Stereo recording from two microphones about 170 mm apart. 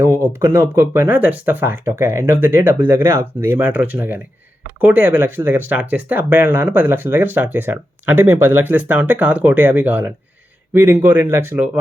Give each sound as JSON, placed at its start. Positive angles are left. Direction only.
{"t": 0.0, "sound": "speech", "side_deg": -15}